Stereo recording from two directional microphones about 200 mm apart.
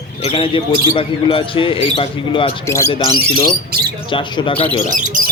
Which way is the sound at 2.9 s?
25° left (ahead or behind).